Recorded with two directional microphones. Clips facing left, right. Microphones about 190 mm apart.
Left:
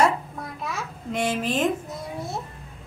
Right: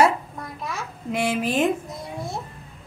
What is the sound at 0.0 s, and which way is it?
Babbling, 5° right (ahead or behind).